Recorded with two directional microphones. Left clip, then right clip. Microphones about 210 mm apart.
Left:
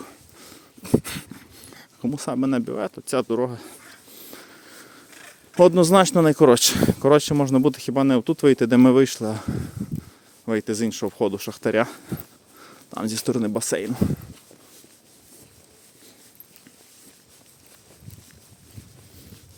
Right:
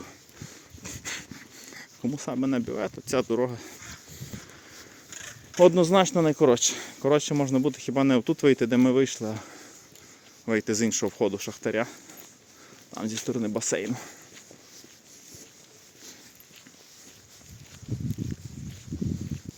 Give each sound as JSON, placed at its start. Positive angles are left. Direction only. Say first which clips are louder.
{"t": 0.0, "sound": "dog", "louder": "left 2 dB", "side_deg": 25}
{"t": 5.5, "sound": "speech", "louder": "left 4 dB", "side_deg": 35}
{"t": 10.4, "sound": "speech", "louder": "left 2 dB", "side_deg": 15}
{"t": 11.3, "sound": "speech", "louder": "left 5 dB", "side_deg": 25}